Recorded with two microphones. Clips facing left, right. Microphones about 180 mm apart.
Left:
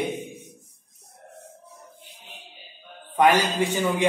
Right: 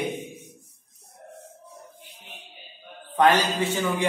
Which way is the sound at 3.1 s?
10° left (ahead or behind).